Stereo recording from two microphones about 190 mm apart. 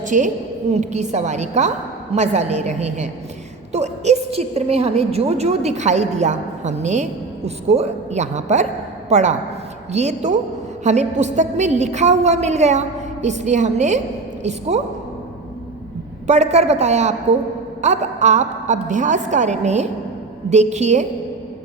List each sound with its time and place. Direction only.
0.0 s a woman's voice: 40° right (ahead or behind)
16.2 s a woman's voice: 35° right (ahead or behind)